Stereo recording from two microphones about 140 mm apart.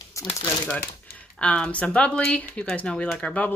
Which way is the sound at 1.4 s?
10° left (ahead or behind).